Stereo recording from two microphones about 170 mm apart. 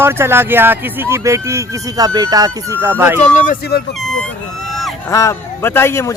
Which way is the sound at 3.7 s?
70° left (ahead or behind).